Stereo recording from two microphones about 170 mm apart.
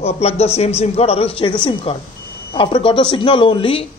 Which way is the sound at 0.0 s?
40° left (ahead or behind).